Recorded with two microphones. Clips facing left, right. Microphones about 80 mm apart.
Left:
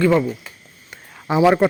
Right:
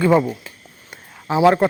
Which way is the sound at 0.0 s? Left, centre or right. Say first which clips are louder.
Right 1 dB; centre.